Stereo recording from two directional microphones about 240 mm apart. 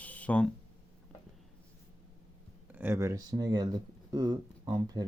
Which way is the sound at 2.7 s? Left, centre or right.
Centre.